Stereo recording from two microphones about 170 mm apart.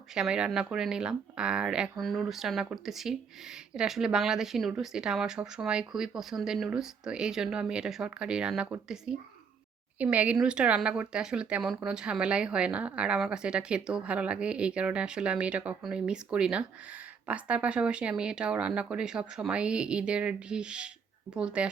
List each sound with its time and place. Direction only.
0.1 s a woman's voice: 5° right (ahead or behind)